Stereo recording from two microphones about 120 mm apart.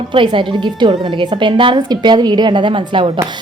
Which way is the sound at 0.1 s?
45° right (ahead or behind).